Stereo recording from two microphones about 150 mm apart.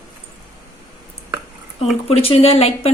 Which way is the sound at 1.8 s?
40° left (ahead or behind).